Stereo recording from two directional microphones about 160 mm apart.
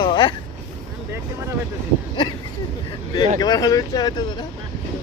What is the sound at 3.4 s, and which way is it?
Speech, 25° left (ahead or behind).